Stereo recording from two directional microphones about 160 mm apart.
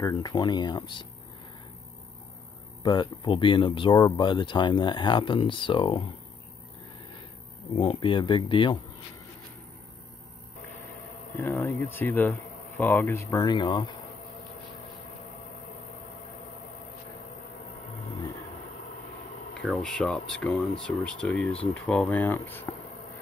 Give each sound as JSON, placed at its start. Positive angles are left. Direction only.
{"t": 0.0, "sound": "speech", "side_deg": 25}
{"t": 2.8, "sound": "speech", "side_deg": 30}
{"t": 7.7, "sound": "speech", "side_deg": 35}
{"t": 11.3, "sound": "speech", "side_deg": 15}
{"t": 19.8, "sound": "speech", "side_deg": 5}